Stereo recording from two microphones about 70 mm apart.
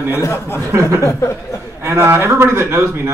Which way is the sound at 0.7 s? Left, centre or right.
Right.